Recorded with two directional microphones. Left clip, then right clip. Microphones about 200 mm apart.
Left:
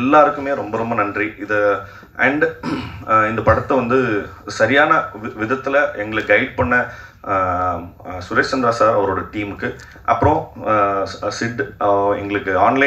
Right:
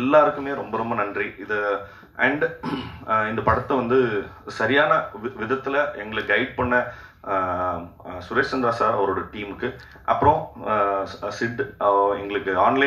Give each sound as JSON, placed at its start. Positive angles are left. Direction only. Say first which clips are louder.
{"t": 0.0, "sound": "speech", "louder": "left 5 dB", "side_deg": -55}